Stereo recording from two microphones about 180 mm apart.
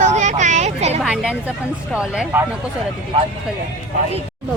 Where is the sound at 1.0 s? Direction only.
5° right (ahead or behind).